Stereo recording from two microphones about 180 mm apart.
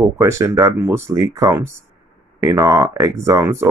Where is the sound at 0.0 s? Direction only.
15° right (ahead or behind).